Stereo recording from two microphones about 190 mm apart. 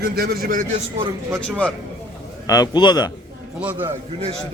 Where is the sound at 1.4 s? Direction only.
5° left (ahead or behind).